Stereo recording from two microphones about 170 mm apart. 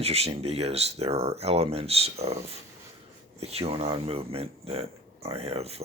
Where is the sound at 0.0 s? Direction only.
35° right (ahead or behind).